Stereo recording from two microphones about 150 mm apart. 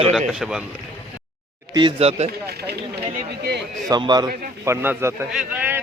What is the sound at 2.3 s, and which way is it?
Speech, 90° right.